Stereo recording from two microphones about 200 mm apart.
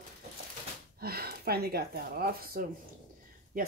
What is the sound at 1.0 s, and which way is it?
Speech, 50° right (ahead or behind).